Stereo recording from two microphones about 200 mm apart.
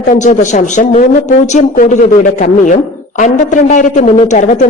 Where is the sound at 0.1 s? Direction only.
40° left (ahead or behind).